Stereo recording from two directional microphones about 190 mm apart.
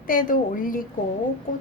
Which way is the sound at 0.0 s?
45° left (ahead or behind).